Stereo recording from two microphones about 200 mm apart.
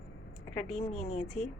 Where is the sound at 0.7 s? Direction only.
35° left (ahead or behind).